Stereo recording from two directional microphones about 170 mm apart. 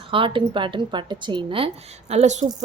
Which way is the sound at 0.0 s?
30° right (ahead or behind).